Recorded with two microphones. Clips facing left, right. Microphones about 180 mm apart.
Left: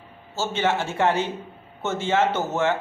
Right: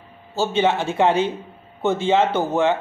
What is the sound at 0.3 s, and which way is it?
Speech, 15° right (ahead or behind).